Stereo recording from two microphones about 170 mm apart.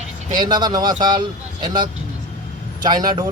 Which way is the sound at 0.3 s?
25° right (ahead or behind).